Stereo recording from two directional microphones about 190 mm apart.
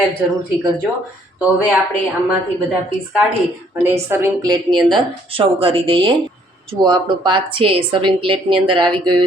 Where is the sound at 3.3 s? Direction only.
10° right (ahead or behind).